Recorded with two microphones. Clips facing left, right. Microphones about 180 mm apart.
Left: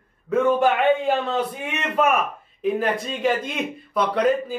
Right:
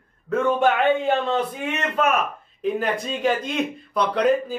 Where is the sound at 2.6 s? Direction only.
Centre (ahead or behind).